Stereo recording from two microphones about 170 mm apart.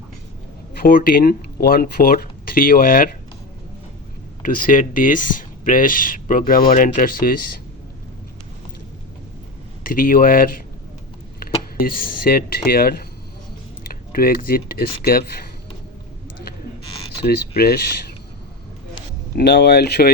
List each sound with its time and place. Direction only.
0.8 s speech: 60° left (ahead or behind)
4.4 s speech: 55° left (ahead or behind)
9.8 s speech: 55° left (ahead or behind)
11.8 s speech: 55° left (ahead or behind)
17.2 s speech: 65° left (ahead or behind)
19.4 s speech: 75° left (ahead or behind)